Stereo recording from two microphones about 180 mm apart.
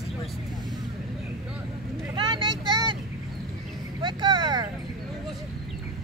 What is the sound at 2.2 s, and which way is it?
Vehicle, 25° right (ahead or behind).